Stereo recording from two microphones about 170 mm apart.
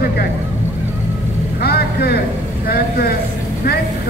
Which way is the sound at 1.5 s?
65° left (ahead or behind).